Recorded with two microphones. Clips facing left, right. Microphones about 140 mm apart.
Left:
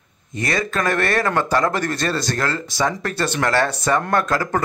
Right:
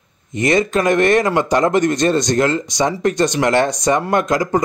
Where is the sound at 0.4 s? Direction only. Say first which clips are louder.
Right 7 dB; 20° right (ahead or behind).